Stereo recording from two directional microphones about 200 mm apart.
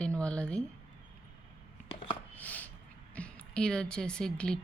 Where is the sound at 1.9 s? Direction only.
25° left (ahead or behind).